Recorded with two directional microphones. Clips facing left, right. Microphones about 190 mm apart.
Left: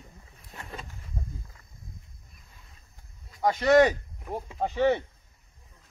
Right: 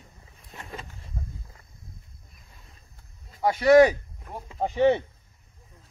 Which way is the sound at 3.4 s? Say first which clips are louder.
Right 3 dB; 10° right (ahead or behind).